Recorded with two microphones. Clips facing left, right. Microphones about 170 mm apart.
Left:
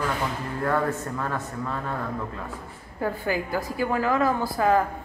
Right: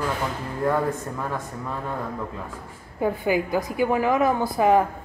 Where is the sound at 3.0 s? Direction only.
15° right (ahead or behind).